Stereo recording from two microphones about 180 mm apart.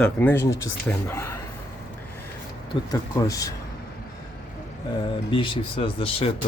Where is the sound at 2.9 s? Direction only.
20° left (ahead or behind).